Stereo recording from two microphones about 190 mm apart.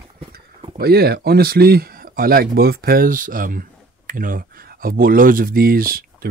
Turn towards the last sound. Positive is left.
turn(degrees=-50)  # may be behind; listen again after turning